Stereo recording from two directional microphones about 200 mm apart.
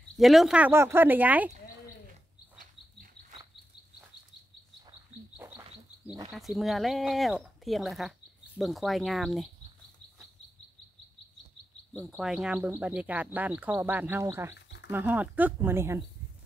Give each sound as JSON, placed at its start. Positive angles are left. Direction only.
{"t": 0.2, "sound": "speech", "side_deg": 0}
{"t": 6.3, "sound": "speech", "side_deg": 0}
{"t": 12.1, "sound": "speech", "side_deg": -5}